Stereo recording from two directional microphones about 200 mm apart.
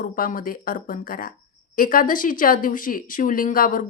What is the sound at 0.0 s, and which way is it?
Speech, 40° left (ahead or behind).